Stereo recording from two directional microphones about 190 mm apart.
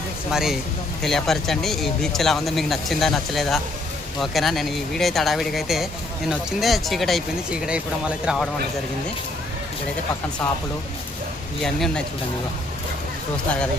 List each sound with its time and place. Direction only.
0.3 s speech: centre (ahead or behind)
11.6 s speech: centre (ahead or behind)